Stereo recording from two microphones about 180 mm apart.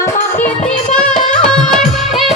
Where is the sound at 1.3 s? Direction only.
5° left (ahead or behind).